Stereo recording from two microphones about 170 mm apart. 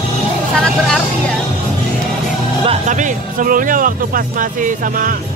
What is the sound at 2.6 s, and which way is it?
Speech, 45° right (ahead or behind).